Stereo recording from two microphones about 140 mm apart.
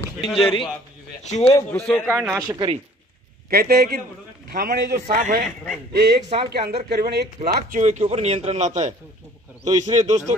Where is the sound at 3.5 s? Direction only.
90° right.